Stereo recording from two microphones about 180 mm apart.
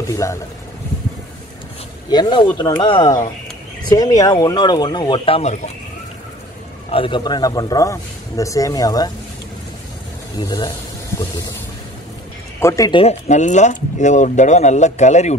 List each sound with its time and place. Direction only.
0.1 s speech: 15° left (ahead or behind)
2.0 s a man's voice: 25° left (ahead or behind)
6.9 s a man's voice: 30° left (ahead or behind)
10.3 s a man's voice: 25° left (ahead or behind)
12.5 s speech: 15° left (ahead or behind)
12.9 s speech: 35° left (ahead or behind)